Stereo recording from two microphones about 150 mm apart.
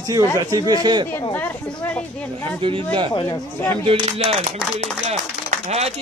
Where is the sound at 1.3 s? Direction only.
10° left (ahead or behind).